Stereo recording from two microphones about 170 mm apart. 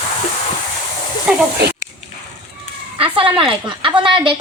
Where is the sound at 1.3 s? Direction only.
10° right (ahead or behind).